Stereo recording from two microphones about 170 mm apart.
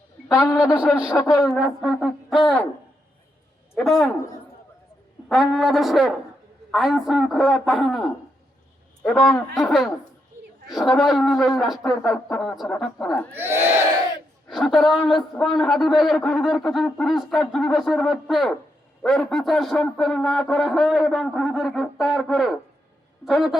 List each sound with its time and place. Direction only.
0.5 s a man's voice: 5° right (ahead or behind)
1.1 s speech: 20° left (ahead or behind)
1.5 s speech: 5° right (ahead or behind)
3.8 s speech: centre (ahead or behind)
5.3 s speech: centre (ahead or behind)
9.6 s speech: centre (ahead or behind)
13.3 s a man's voice: 15° right (ahead or behind)
14.4 s a woman's voice: centre (ahead or behind)